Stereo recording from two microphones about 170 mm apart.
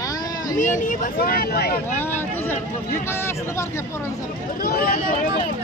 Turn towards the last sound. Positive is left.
turn(degrees=60)  # may be behind; listen again after turning